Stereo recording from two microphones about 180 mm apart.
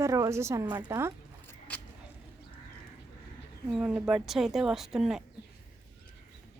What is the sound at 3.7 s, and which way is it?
A woman's voice, 5° right (ahead or behind).